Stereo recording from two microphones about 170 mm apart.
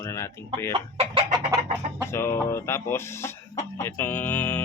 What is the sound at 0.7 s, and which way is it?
Speech, 30° right (ahead or behind).